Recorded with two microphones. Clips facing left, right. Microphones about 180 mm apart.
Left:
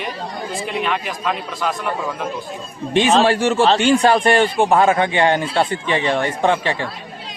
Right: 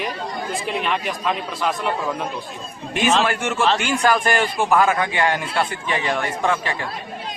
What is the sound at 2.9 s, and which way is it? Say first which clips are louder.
A man's voice: left 5 dB; 30° left (ahead or behind).